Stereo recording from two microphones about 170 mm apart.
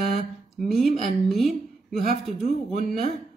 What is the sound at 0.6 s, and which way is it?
A woman's voice, centre (ahead or behind).